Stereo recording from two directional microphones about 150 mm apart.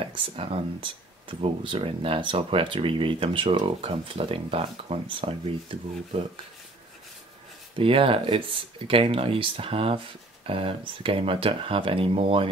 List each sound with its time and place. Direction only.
0.0 s speech: 40° right (ahead or behind)
7.7 s speech: 35° right (ahead or behind)